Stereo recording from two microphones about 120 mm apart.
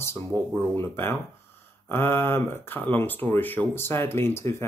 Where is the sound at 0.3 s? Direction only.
40° right (ahead or behind).